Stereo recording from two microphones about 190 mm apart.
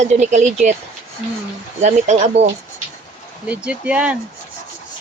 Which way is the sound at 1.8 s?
40° right (ahead or behind).